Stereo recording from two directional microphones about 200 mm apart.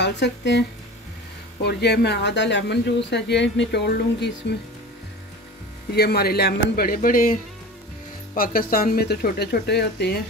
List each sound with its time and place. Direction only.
0.0 s speech: 60° left (ahead or behind)
5.9 s speech: 50° left (ahead or behind)
8.4 s speech: 45° left (ahead or behind)